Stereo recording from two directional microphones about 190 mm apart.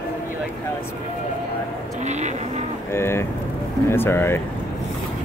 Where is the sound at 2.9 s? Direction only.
15° left (ahead or behind).